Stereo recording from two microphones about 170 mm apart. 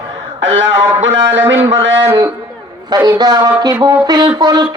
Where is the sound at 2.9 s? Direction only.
20° right (ahead or behind).